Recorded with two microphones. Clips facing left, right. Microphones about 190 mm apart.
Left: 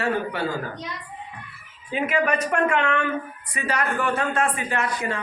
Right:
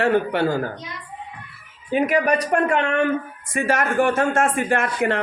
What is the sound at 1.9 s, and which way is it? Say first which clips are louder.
Speech: right 4 dB; 40° right (ahead or behind).